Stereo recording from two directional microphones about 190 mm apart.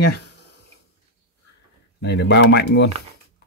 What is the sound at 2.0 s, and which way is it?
Speech, 65° left (ahead or behind).